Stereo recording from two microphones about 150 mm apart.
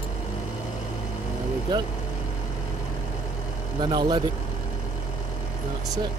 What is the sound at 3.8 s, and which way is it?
Speech, 30° right (ahead or behind).